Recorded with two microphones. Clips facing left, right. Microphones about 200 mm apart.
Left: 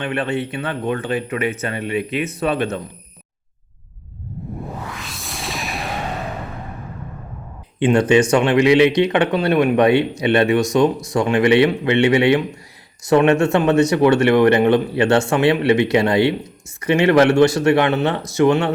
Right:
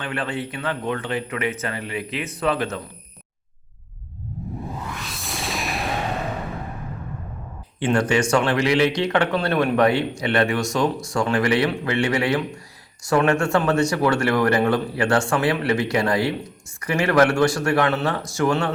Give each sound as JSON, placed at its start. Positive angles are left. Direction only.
{"t": 0.0, "sound": "speech", "side_deg": 25}
{"t": 4.9, "sound": "music", "side_deg": 0}
{"t": 7.8, "sound": "speech", "side_deg": 20}